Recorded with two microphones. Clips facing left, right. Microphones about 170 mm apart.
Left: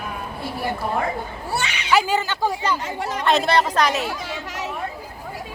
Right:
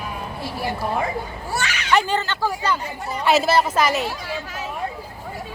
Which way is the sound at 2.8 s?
90° left.